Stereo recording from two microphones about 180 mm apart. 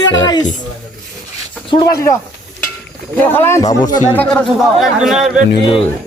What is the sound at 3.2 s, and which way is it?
Speech, 10° left (ahead or behind).